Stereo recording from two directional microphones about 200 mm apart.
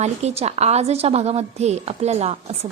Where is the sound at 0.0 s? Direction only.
35° right (ahead or behind).